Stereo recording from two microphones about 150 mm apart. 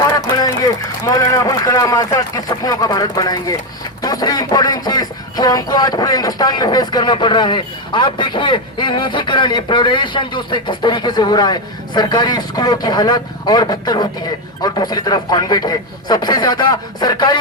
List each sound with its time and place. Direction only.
0.1 s a man's voice: 25° left (ahead or behind)